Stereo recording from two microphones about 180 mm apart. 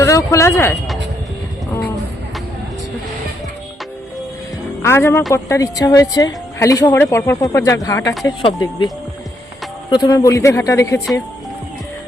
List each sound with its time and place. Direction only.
0.0 s speech: 15° left (ahead or behind)
4.8 s speech: 15° left (ahead or behind)
9.9 s speech: 20° left (ahead or behind)